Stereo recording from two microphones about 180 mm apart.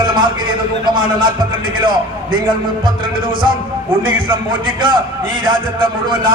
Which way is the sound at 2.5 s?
30° right (ahead or behind).